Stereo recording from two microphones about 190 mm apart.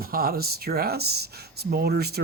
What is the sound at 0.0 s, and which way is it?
Speech, 50° right (ahead or behind).